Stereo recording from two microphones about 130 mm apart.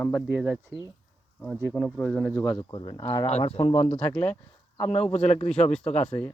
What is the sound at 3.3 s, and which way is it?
Speech, 50° left (ahead or behind).